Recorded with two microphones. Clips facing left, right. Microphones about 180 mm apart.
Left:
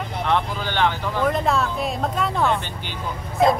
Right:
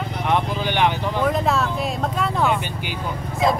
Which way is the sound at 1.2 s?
Centre (ahead or behind).